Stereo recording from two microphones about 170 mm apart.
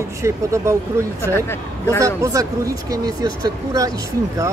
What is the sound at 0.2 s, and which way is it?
Speech, 15° right (ahead or behind).